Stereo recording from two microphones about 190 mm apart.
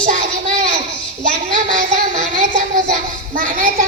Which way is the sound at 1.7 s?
45° right (ahead or behind).